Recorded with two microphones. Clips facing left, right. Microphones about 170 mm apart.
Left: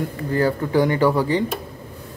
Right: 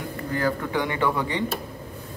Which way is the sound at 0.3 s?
35° left (ahead or behind).